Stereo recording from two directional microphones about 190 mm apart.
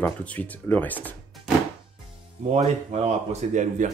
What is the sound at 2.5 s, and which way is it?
Speech, 40° right (ahead or behind).